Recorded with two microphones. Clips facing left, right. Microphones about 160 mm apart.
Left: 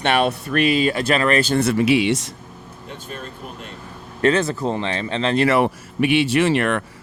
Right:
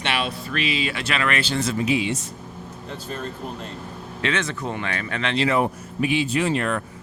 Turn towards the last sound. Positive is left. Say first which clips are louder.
# left 5 dB
turn(degrees=75)  # may be behind; listen again after turning